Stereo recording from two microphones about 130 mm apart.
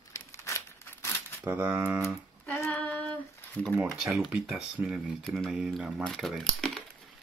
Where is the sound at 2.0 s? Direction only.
15° left (ahead or behind).